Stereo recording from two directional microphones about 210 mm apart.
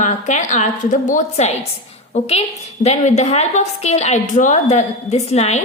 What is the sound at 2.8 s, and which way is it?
A woman's voice, 30° left (ahead or behind).